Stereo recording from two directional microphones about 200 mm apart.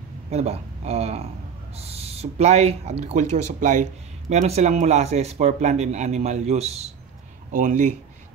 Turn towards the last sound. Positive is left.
turn(degrees=-40)  # may be behind; listen again after turning